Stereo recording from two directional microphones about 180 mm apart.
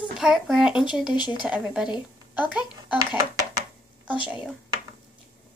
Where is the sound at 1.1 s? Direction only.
25° left (ahead or behind).